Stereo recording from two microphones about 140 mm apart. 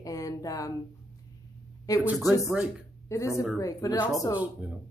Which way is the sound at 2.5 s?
10° right (ahead or behind).